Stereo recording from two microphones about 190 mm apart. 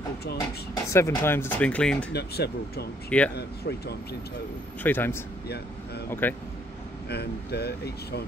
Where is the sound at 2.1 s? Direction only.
60° left (ahead or behind).